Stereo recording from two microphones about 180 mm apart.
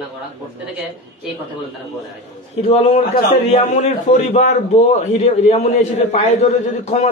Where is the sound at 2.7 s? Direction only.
35° left (ahead or behind).